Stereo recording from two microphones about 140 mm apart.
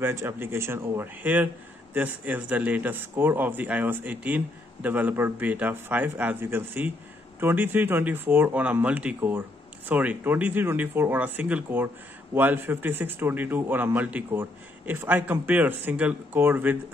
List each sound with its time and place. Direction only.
0.0 s a man's voice: 20° right (ahead or behind)